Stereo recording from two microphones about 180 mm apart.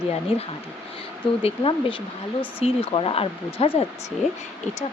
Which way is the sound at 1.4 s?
30° left (ahead or behind).